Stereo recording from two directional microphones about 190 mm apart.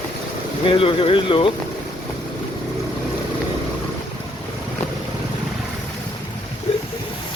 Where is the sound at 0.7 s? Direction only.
30° left (ahead or behind).